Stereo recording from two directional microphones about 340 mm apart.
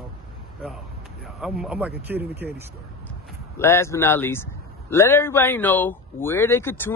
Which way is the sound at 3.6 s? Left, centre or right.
Centre.